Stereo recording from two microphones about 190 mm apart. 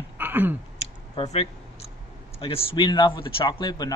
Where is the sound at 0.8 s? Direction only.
30° left (ahead or behind).